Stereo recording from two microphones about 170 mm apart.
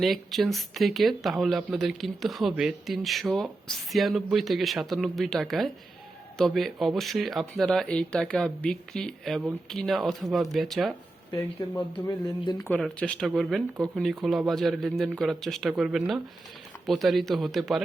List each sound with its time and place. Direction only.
0.0 s speech: centre (ahead or behind)
11.3 s speech: 20° left (ahead or behind)
12.6 s speech: 5° left (ahead or behind)